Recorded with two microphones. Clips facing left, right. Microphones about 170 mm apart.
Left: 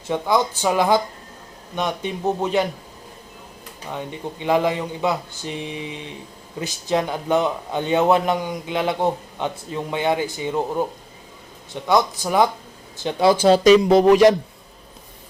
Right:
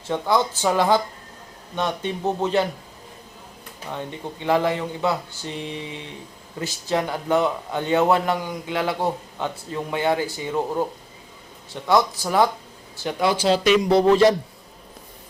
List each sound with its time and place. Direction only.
0.1 s speech: 15° left (ahead or behind)
3.8 s a man's voice: 15° left (ahead or behind)
13.3 s speech: 50° left (ahead or behind)
13.7 s speech: 20° left (ahead or behind)